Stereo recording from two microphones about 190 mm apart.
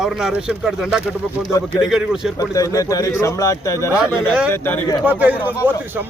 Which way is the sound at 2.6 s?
20° left (ahead or behind).